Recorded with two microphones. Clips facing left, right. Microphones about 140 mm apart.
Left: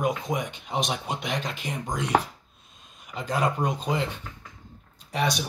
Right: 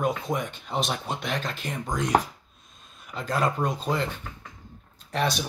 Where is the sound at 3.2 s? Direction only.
10° left (ahead or behind).